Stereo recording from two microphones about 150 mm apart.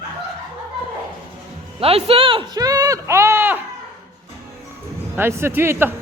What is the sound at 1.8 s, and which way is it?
Speech, 40° right (ahead or behind).